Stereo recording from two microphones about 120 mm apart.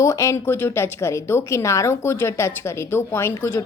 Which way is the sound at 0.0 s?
25° left (ahead or behind).